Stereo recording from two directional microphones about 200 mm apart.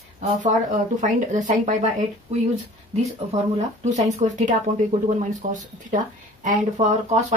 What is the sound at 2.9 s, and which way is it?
Speech, 35° right (ahead or behind).